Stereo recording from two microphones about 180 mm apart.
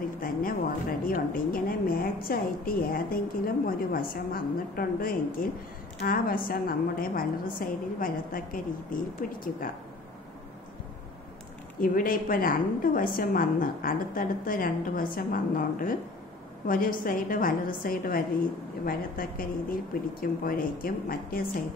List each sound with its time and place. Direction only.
0.2 s a woman's voice: 50° left (ahead or behind)
11.8 s a woman's voice: 50° left (ahead or behind)